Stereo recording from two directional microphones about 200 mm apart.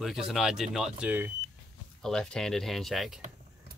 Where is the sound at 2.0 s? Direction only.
5° left (ahead or behind).